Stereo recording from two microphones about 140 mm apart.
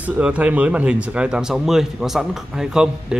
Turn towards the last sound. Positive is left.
turn(degrees=-5)  # may be behind; listen again after turning